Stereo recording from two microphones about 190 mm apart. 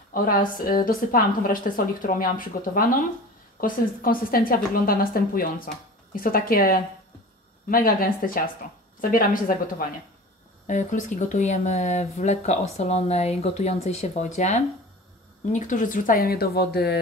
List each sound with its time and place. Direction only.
0.1 s a woman's voice: 50° left (ahead or behind)